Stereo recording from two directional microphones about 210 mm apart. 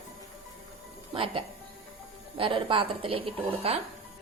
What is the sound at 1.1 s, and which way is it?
A woman's voice, 25° right (ahead or behind).